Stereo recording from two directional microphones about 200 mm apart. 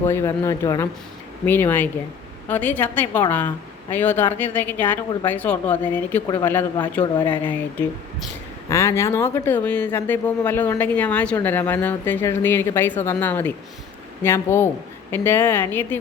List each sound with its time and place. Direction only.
0.0 s speech: 15° left (ahead or behind)
7.0 s speech: 25° left (ahead or behind)
7.4 s speech: 10° left (ahead or behind)